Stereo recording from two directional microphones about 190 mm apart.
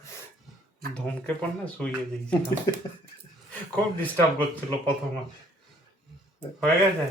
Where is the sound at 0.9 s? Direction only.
5° left (ahead or behind).